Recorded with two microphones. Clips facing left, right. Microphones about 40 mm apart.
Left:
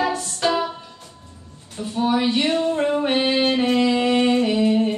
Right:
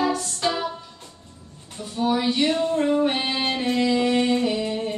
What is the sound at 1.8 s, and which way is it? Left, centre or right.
Music, left.